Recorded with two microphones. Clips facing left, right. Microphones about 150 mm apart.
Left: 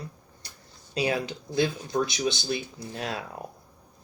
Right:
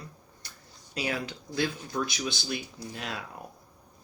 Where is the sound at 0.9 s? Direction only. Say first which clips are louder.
Left 5 dB; 25° left (ahead or behind).